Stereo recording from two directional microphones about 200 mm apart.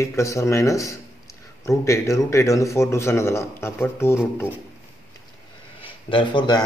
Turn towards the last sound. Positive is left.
turn(degrees=20)  # may be behind; listen again after turning